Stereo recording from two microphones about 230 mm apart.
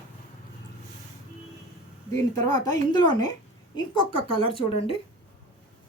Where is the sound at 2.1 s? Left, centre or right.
Centre.